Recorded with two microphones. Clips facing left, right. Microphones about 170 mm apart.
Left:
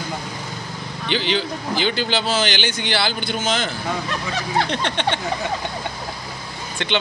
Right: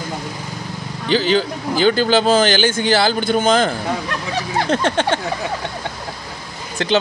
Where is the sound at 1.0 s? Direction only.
40° right (ahead or behind).